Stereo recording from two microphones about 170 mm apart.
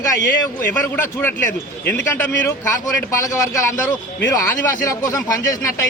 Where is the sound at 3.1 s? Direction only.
20° left (ahead or behind).